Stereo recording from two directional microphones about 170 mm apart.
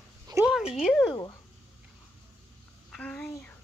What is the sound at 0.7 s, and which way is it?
Speech, centre (ahead or behind).